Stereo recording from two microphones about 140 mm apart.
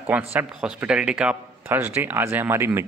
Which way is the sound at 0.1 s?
10° right (ahead or behind).